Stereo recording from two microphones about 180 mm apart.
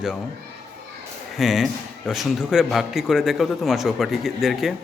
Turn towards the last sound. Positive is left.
turn(degrees=0)  # may be behind; listen again after turning